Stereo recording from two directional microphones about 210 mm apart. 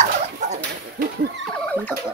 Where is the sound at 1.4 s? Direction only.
5° left (ahead or behind).